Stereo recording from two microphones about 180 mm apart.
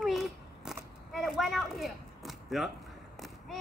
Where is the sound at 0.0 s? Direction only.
Centre (ahead or behind).